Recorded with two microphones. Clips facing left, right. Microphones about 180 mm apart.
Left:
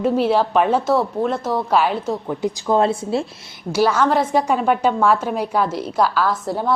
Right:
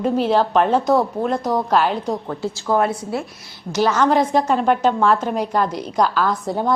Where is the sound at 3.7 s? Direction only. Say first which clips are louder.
Even; 10° left (ahead or behind).